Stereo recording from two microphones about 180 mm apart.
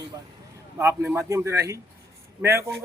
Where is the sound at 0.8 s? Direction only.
15° right (ahead or behind).